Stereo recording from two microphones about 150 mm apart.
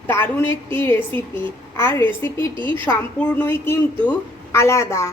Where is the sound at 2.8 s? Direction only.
15° left (ahead or behind).